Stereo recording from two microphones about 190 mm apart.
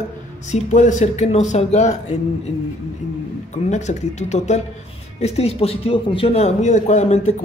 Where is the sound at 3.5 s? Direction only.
40° left (ahead or behind).